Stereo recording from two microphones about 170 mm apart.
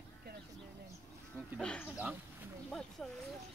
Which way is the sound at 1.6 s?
5° left (ahead or behind).